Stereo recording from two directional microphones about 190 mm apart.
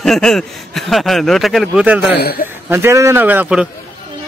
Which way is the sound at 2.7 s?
15° right (ahead or behind).